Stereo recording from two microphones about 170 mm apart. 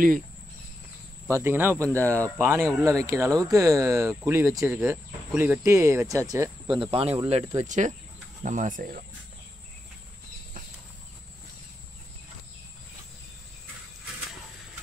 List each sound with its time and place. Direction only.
1.2 s speech: 15° right (ahead or behind)
6.8 s speech: 35° right (ahead or behind); by 9.0 s 50° right (ahead or behind)